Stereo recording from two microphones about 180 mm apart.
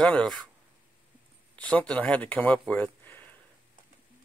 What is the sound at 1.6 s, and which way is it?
Speech, 5° left (ahead or behind).